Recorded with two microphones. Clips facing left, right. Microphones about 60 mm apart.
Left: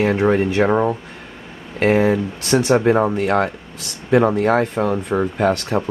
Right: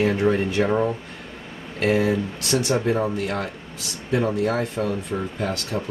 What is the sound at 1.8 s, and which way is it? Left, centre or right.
Speech, left.